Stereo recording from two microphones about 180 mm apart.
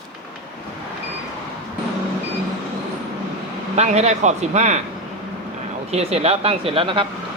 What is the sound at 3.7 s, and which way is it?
Speech, 40° right (ahead or behind).